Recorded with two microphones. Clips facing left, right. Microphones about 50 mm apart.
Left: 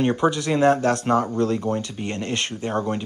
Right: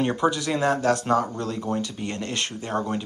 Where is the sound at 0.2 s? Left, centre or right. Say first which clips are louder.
Left 4 dB; left.